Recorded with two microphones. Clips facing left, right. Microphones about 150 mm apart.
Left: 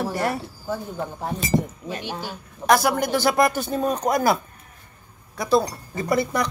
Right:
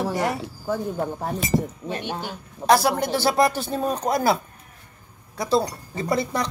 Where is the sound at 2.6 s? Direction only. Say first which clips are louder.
Even; 30° right (ahead or behind).